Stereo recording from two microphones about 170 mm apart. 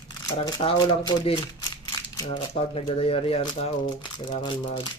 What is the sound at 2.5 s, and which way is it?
Speech, 35° left (ahead or behind).